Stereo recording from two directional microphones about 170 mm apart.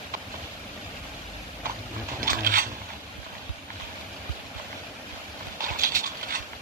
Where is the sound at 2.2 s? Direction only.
55° right (ahead or behind).